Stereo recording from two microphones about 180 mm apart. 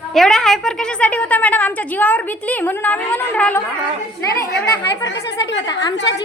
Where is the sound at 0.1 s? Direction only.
Centre (ahead or behind).